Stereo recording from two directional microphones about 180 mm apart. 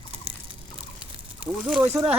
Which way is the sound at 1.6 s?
5° right (ahead or behind).